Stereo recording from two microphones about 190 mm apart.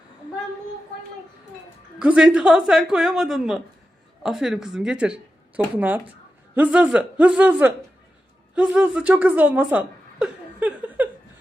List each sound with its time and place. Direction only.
2.0 s a woman's voice: 5° right (ahead or behind)